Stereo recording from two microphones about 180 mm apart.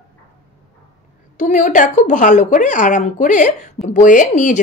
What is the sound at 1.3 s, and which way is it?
A woman's voice, 45° left (ahead or behind).